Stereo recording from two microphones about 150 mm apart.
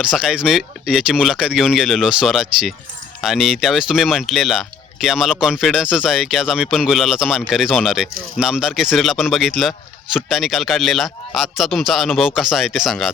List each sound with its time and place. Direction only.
0.0 s speech: 5° right (ahead or behind)